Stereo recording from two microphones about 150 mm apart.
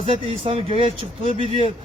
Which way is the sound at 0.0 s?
40° right (ahead or behind).